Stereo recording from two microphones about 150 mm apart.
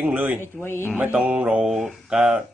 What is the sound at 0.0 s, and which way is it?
Speech, 10° right (ahead or behind).